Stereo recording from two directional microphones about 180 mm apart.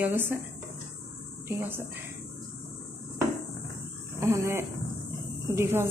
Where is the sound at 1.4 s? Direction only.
15° right (ahead or behind).